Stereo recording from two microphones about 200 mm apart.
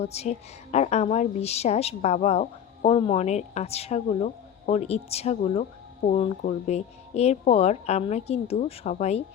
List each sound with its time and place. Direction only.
0.0 s a woman's voice: 30° left (ahead or behind)